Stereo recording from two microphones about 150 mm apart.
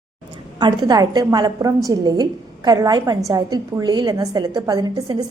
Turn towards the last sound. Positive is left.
turn(degrees=-30)  # may be behind; listen again after turning